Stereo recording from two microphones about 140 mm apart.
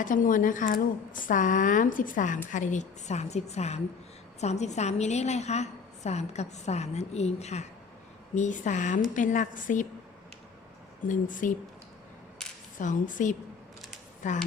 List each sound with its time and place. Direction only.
0.0 s a woman's voice: 75° left (ahead or behind); by 7.7 s 50° left (ahead or behind)
8.4 s a woman's voice: 65° left (ahead or behind)
11.3 s a woman's voice: 70° left (ahead or behind)
12.8 s a woman's voice: 65° left (ahead or behind)